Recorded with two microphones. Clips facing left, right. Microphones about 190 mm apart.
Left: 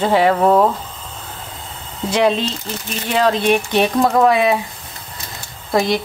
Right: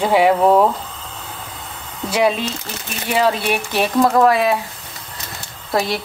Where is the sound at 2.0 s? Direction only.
10° right (ahead or behind).